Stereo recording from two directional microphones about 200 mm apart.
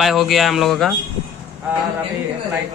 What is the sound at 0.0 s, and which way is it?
Speech, centre (ahead or behind).